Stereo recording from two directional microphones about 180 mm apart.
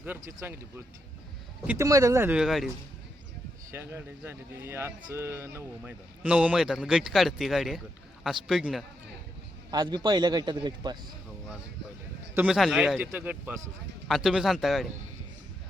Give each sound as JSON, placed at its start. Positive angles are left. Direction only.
{"t": 0.3, "sound": "a man's voice", "side_deg": -15}
{"t": 1.6, "sound": "a man's voice", "side_deg": -15}
{"t": 3.7, "sound": "speech", "side_deg": -15}
{"t": 9.7, "sound": "a man's voice", "side_deg": -25}
{"t": 12.3, "sound": "a man's voice", "side_deg": -5}